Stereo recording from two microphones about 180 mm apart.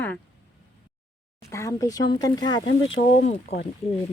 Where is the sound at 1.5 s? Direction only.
15° left (ahead or behind).